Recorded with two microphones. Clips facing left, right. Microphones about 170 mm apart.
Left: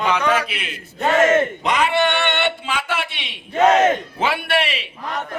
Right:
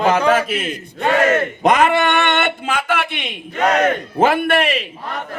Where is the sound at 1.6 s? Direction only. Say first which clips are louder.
Right 4 dB; 50° right (ahead or behind).